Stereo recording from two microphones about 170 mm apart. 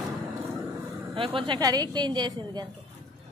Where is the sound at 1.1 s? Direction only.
30° right (ahead or behind).